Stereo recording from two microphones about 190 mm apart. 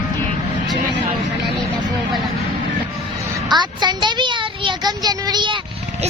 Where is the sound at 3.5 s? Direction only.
25° right (ahead or behind).